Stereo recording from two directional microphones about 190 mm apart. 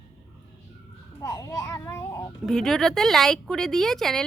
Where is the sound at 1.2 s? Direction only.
20° left (ahead or behind).